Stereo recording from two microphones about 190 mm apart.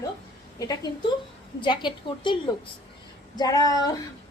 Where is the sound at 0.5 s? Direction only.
20° left (ahead or behind).